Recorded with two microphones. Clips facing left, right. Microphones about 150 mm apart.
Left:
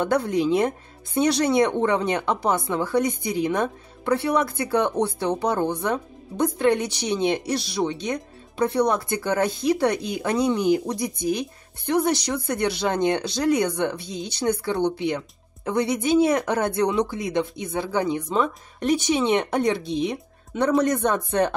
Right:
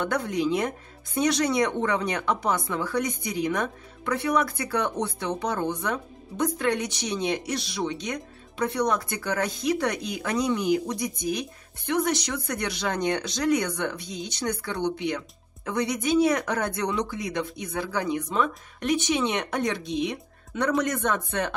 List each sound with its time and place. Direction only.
0.0 s speech: 30° left (ahead or behind)